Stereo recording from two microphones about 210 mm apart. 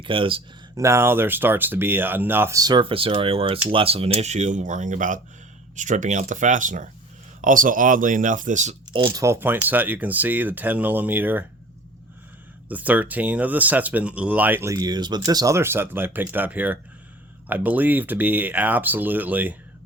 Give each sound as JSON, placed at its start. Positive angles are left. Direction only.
{"t": 0.0, "sound": "speech", "side_deg": -25}
{"t": 0.8, "sound": "speech", "side_deg": -15}
{"t": 12.6, "sound": "speech", "side_deg": -5}